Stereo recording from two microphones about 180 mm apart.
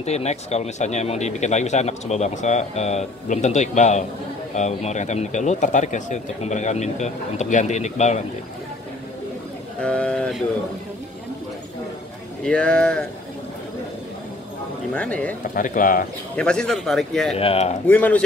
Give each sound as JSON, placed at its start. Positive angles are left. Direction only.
{"t": 0.0, "sound": "speech", "side_deg": 35}
{"t": 9.8, "sound": "speech", "side_deg": 5}
{"t": 12.4, "sound": "a man's voice", "side_deg": 5}
{"t": 15.0, "sound": "speech", "side_deg": 5}
{"t": 15.5, "sound": "speech", "side_deg": 50}
{"t": 16.3, "sound": "a man's voice", "side_deg": 5}
{"t": 17.4, "sound": "speech", "side_deg": 35}
{"t": 17.8, "sound": "speech", "side_deg": 10}